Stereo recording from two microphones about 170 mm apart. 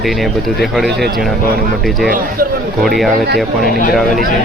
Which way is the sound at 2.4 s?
60° right (ahead or behind).